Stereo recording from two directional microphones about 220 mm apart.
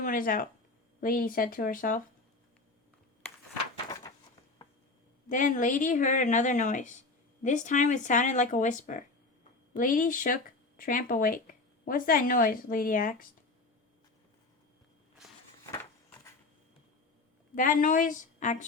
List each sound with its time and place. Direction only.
0.0 s speech: 40° left (ahead or behind)
5.3 s speech: 35° left (ahead or behind)
15.7 s a sound: 10° left (ahead or behind)
17.5 s speech: 35° left (ahead or behind)